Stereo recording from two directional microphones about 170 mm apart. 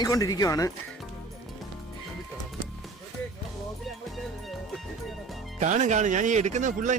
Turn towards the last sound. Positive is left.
turn(degrees=-50)  # may be behind; listen again after turning